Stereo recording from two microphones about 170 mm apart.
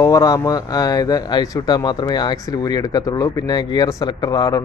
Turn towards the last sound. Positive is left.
turn(degrees=20)  # may be behind; listen again after turning